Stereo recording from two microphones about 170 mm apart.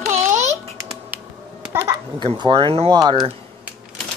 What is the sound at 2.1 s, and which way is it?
Speech, 25° right (ahead or behind).